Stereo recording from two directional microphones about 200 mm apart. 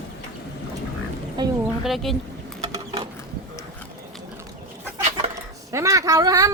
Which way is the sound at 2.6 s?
25° right (ahead or behind).